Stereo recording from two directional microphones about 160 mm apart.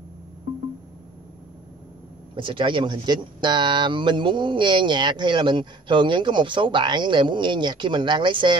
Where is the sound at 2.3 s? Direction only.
30° right (ahead or behind).